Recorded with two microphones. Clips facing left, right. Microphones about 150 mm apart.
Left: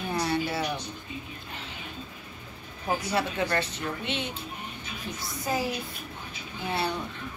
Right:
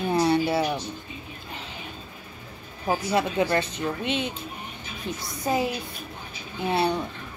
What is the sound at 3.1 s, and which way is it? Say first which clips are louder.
A woman's voice: right 5 dB; 20° right (ahead or behind).